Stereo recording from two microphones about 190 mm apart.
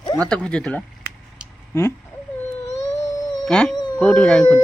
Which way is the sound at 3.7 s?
20° left (ahead or behind).